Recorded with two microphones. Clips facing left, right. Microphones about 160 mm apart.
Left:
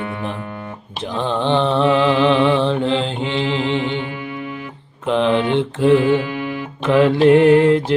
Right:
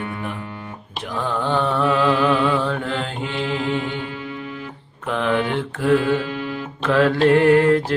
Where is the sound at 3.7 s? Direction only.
25° left (ahead or behind).